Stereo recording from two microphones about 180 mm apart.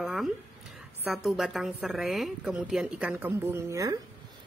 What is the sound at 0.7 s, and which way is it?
A woman's voice, centre (ahead or behind).